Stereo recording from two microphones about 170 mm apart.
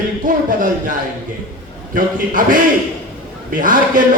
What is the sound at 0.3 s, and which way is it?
Speech, 55° right (ahead or behind).